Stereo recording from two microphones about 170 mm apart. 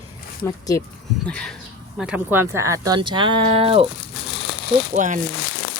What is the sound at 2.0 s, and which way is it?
Speech, 5° right (ahead or behind).